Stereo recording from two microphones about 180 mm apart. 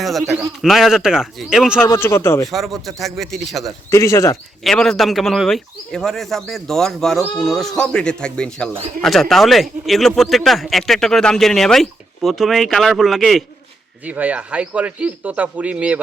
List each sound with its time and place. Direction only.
0.0 s a man's voice: centre (ahead or behind)
1.8 s a man's voice: 15° left (ahead or behind)
2.5 s a man's voice: centre (ahead or behind)
3.9 s a man's voice: 15° left (ahead or behind)
4.6 s a man's voice: centre (ahead or behind)